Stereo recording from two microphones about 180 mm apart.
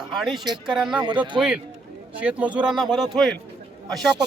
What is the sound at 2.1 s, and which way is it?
Speech, 5° right (ahead or behind).